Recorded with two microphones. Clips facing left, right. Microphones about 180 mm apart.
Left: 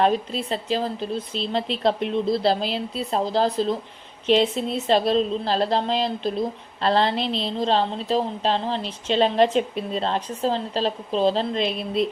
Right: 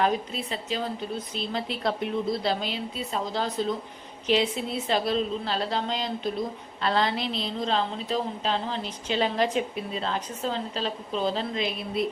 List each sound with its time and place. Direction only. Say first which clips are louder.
0.0 s a woman's voice: left 5 dB; 30° left (ahead or behind)